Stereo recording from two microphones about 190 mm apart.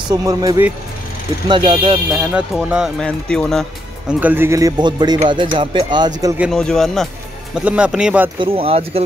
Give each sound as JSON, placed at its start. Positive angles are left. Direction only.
{"t": 0.1, "sound": "speech", "side_deg": -20}
{"t": 2.1, "sound": "speech", "side_deg": -5}
{"t": 4.2, "sound": "speech", "side_deg": -10}
{"t": 6.3, "sound": "speech", "side_deg": -5}
{"t": 8.4, "sound": "speech", "side_deg": -30}